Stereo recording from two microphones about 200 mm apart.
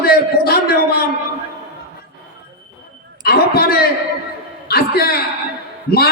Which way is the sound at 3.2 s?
50° left (ahead or behind).